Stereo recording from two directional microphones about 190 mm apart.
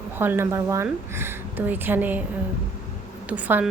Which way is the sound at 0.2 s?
10° right (ahead or behind).